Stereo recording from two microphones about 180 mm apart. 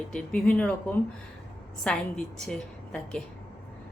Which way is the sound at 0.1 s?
5° left (ahead or behind).